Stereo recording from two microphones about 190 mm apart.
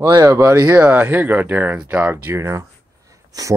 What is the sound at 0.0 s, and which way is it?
A man's voice, 15° right (ahead or behind).